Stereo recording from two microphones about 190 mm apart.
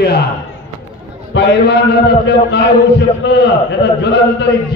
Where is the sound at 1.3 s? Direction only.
65° left (ahead or behind).